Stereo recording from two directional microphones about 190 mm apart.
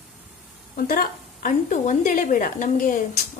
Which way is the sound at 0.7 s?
50° left (ahead or behind).